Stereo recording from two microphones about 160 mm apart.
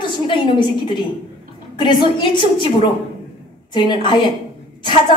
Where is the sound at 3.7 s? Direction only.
30° left (ahead or behind).